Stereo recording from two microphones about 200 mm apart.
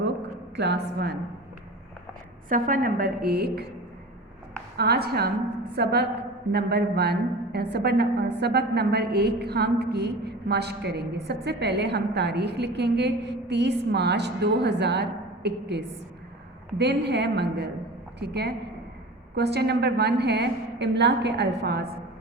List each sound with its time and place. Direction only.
0.0 s a sound: 60° right (ahead or behind)
2.5 s a woman's voice: 45° right (ahead or behind)
4.8 s a woman's voice: 50° right (ahead or behind)